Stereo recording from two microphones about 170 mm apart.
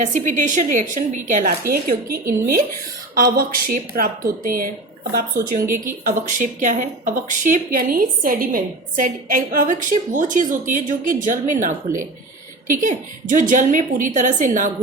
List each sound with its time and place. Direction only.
0.0 s a woman's voice: 45° right (ahead or behind)
6.1 s a woman's voice: 50° right (ahead or behind)
12.8 s a woman's voice: 50° right (ahead or behind)